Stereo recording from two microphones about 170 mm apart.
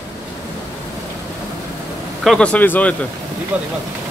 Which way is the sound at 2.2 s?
5° left (ahead or behind).